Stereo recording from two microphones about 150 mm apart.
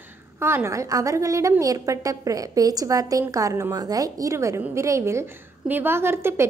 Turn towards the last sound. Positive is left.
turn(degrees=-15)  # may be behind; listen again after turning